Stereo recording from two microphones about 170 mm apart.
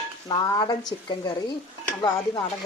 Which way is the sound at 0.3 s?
20° left (ahead or behind).